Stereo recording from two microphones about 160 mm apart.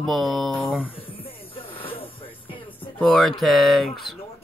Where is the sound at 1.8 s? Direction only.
35° left (ahead or behind).